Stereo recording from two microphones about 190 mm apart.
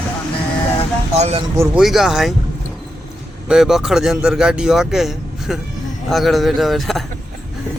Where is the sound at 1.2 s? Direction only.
35° right (ahead or behind).